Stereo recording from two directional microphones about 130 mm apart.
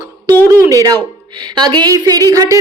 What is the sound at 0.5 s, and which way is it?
A woman's voice, 25° right (ahead or behind).